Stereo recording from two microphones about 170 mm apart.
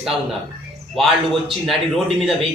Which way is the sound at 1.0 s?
35° right (ahead or behind).